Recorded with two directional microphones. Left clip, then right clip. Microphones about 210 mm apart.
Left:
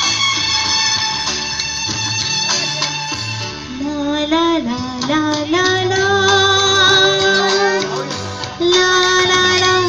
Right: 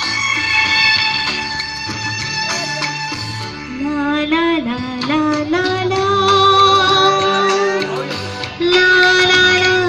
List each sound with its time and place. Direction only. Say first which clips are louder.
0.2 s music: right 1 dB; 15° right (ahead or behind)
0.8 s music: right 4 dB; 5° left (ahead or behind)
5.5 s music: left 2 dB; 5° left (ahead or behind)
8.6 s child singing: right 2 dB; 5° left (ahead or behind)